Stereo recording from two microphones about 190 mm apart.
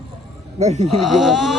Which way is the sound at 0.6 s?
35° right (ahead or behind).